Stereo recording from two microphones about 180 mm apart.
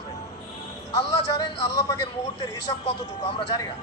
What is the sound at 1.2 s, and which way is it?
Speech, 25° left (ahead or behind).